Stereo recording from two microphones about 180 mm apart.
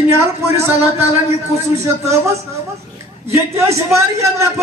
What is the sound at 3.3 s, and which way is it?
A man's voice, 15° right (ahead or behind).